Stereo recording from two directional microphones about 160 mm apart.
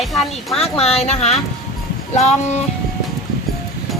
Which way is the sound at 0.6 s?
40° left (ahead or behind).